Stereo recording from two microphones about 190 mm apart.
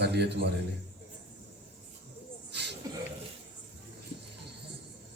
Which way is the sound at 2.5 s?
65° right (ahead or behind).